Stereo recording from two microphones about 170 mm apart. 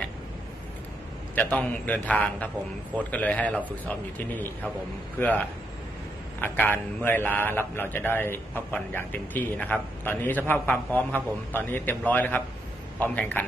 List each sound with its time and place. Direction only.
1.3 s a man's voice: 10° left (ahead or behind)
5.2 s a man's voice: 10° left (ahead or behind)
6.4 s a man's voice: 10° left (ahead or behind)